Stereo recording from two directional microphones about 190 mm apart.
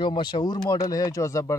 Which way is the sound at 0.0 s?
25° left (ahead or behind).